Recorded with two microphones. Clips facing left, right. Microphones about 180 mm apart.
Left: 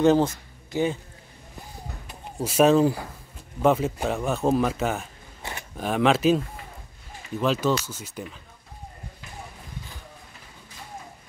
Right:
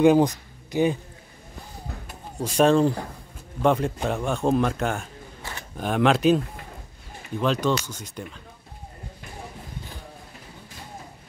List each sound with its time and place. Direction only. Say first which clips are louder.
0.0 s speech: right 2 dB; 15° right (ahead or behind)
2.4 s speech: even; 5° left (ahead or behind)
5.4 s a sound: left 2 dB; 20° left (ahead or behind)
5.8 s speech: right 1 dB; centre (ahead or behind)